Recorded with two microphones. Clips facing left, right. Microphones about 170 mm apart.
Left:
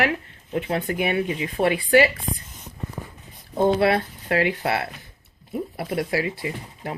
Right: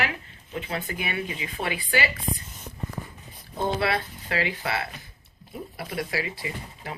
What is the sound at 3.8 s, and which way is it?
A woman's voice, 50° left (ahead or behind).